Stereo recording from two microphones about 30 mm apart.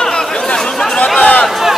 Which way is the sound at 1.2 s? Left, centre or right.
Left.